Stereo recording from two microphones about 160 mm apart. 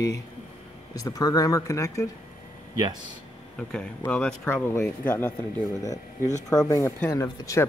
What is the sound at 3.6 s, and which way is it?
Speech, 5° left (ahead or behind).